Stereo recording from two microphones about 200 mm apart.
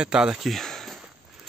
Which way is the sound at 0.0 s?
5° right (ahead or behind).